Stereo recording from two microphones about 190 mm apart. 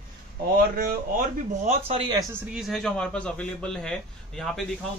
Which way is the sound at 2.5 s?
Centre (ahead or behind).